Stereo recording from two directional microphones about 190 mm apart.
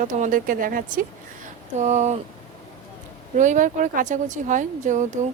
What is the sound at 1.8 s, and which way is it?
Speech, 35° right (ahead or behind).